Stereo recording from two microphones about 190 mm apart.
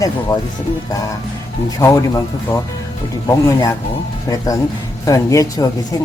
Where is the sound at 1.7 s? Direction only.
15° left (ahead or behind).